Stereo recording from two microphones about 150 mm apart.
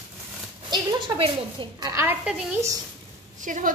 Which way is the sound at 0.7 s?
30° right (ahead or behind).